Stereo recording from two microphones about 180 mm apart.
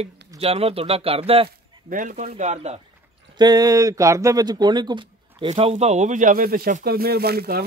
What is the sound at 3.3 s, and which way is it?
Speech, 20° right (ahead or behind).